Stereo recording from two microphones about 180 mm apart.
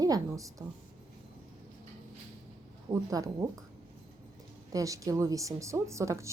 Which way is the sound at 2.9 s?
20° right (ahead or behind).